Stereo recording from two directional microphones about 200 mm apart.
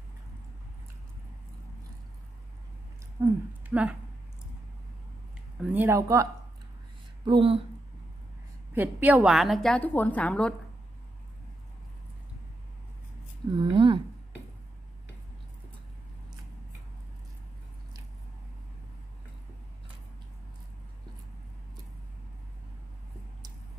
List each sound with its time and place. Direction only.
3.2 s speech: 10° right (ahead or behind)
5.6 s speech: 10° right (ahead or behind)
7.2 s speech: 25° right (ahead or behind)
8.7 s a woman's voice: 10° right (ahead or behind); by 10.5 s 5° left (ahead or behind)
13.6 s speech: 25° right (ahead or behind)